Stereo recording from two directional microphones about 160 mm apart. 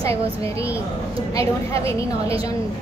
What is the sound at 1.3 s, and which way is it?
A woman's voice, 20° left (ahead or behind).